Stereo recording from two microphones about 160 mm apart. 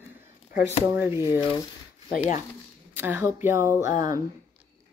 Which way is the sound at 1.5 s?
30° left (ahead or behind).